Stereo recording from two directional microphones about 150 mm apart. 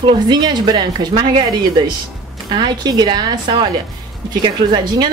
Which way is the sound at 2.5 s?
30° right (ahead or behind).